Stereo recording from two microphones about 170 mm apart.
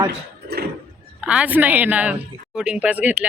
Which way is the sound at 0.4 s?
70° right (ahead or behind).